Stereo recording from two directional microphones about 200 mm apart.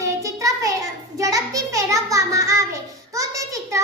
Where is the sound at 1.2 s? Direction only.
15° right (ahead or behind).